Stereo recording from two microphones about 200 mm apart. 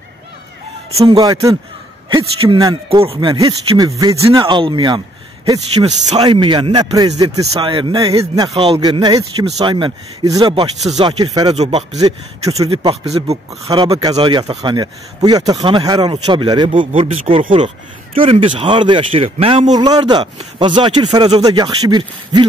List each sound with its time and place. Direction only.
0.9 s a man's voice: 20° right (ahead or behind)
11.5 s speech: 35° right (ahead or behind)
13.7 s a man's voice: 20° right (ahead or behind)